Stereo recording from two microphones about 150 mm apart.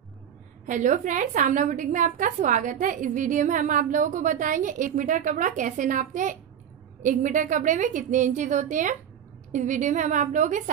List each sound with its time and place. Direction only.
0.7 s a woman's voice: 60° right (ahead or behind)